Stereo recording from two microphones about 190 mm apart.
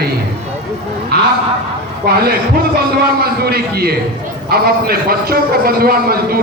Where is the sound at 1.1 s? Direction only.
55° right (ahead or behind).